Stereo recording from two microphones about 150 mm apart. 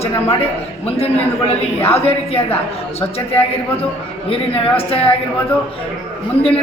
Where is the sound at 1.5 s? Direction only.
40° left (ahead or behind).